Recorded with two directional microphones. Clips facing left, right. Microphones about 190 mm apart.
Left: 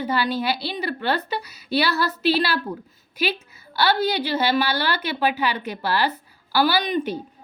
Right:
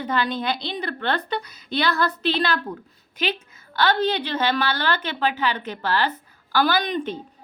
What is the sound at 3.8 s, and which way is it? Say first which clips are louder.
A woman's voice: even; 10° left (ahead or behind).